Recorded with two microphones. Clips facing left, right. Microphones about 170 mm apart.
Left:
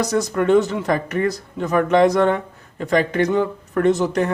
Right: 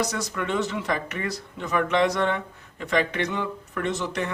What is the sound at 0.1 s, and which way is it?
Speech, 45° left (ahead or behind).